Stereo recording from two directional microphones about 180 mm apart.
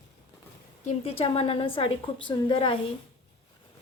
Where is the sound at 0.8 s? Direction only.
35° left (ahead or behind).